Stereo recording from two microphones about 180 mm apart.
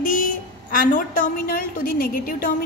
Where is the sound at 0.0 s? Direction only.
50° left (ahead or behind).